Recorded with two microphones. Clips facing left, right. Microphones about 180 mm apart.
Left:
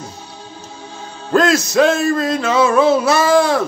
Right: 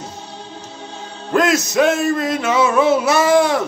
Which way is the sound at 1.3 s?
15° right (ahead or behind).